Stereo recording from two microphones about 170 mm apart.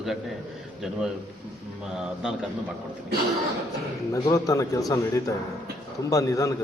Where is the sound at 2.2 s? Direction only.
5° right (ahead or behind).